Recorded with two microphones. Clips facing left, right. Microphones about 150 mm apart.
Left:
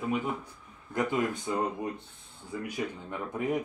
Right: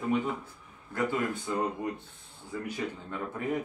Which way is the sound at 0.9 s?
20° left (ahead or behind).